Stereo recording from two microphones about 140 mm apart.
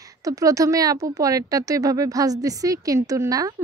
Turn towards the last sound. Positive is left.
turn(degrees=-25)  # may be behind; listen again after turning